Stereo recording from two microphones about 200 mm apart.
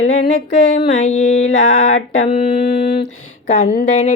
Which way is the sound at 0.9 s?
35° left (ahead or behind).